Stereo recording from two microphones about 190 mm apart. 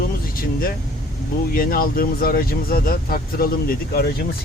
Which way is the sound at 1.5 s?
50° left (ahead or behind).